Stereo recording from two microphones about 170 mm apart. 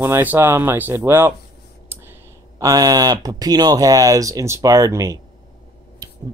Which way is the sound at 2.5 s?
20° right (ahead or behind).